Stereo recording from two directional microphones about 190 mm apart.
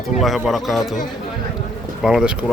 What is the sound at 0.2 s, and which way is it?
Speech, centre (ahead or behind).